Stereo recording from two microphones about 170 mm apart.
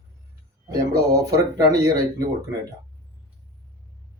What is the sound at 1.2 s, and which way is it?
Speech, 20° right (ahead or behind).